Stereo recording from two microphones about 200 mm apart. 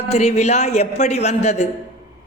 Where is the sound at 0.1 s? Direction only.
35° left (ahead or behind).